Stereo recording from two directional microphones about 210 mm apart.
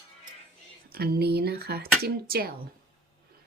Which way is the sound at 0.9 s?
45° right (ahead or behind).